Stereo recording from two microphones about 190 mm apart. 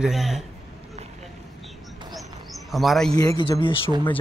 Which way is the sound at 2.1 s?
Centre (ahead or behind).